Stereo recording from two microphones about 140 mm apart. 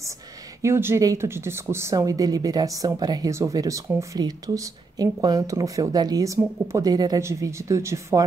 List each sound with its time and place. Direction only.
0.6 s speech: 20° right (ahead or behind)